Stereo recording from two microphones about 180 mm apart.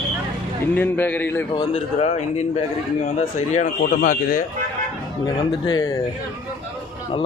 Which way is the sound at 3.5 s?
45° left (ahead or behind).